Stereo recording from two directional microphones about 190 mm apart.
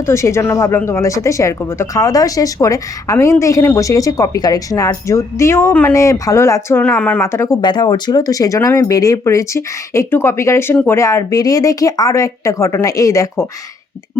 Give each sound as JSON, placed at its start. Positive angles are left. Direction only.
{"t": 0.1, "sound": "speech", "side_deg": 15}